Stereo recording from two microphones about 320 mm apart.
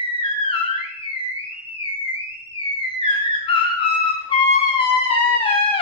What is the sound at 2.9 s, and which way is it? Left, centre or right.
Theremin, centre.